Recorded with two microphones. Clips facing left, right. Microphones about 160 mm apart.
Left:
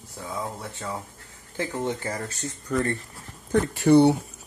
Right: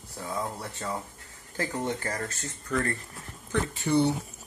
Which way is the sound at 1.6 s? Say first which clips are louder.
Left 2 dB; 15° left (ahead or behind).